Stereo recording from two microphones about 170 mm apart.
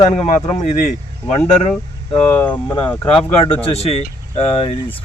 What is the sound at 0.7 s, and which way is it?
Speech, 40° left (ahead or behind).